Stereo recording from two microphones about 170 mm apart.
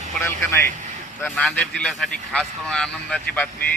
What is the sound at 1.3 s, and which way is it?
Speech, 5° left (ahead or behind).